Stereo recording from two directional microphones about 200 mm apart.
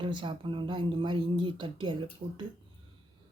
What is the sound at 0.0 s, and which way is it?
Speech, 25° right (ahead or behind).